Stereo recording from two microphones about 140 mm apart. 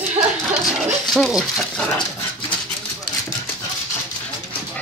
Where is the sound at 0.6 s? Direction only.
Centre (ahead or behind).